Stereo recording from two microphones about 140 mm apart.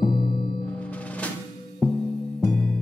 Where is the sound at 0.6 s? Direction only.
10° left (ahead or behind).